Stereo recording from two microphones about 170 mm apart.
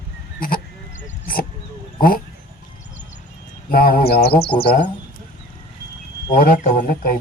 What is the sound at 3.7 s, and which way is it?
Mantra, 60° left (ahead or behind).